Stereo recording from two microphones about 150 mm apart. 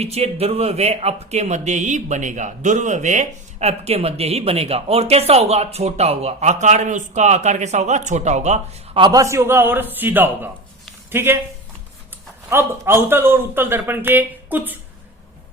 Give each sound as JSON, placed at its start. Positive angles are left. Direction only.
{"t": 0.0, "sound": "speech", "side_deg": -45}
{"t": 9.0, "sound": "a man's voice", "side_deg": -25}
{"t": 12.5, "sound": "a man's voice", "side_deg": -15}